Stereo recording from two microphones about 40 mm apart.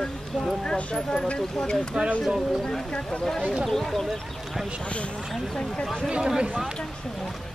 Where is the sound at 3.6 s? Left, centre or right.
Centre.